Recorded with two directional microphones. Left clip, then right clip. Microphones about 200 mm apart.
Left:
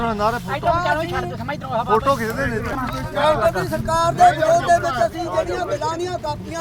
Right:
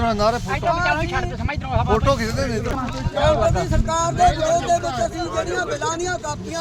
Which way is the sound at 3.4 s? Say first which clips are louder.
Left 1 dB; 50° right (ahead or behind).